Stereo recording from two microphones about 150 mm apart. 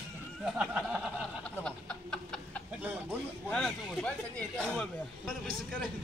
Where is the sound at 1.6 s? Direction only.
5° left (ahead or behind).